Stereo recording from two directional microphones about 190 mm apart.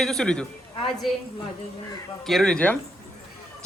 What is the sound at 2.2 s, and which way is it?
Speech, centre (ahead or behind).